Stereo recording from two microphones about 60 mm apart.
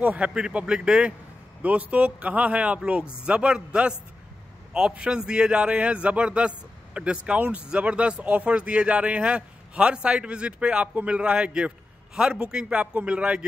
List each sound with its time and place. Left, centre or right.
0.0 s speech: right
0.3 s a man's voice: centre